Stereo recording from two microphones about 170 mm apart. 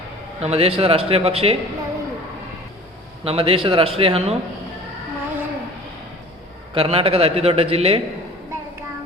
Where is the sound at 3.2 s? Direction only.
35° right (ahead or behind).